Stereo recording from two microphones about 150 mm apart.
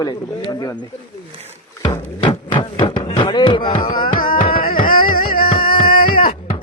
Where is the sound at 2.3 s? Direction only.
30° left (ahead or behind).